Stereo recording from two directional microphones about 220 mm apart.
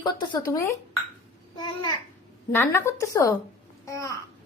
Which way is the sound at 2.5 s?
15° left (ahead or behind).